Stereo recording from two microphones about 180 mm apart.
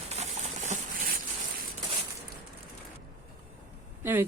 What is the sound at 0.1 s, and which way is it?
Patter, 40° right (ahead or behind).